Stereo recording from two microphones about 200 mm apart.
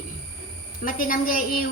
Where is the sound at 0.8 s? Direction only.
45° left (ahead or behind).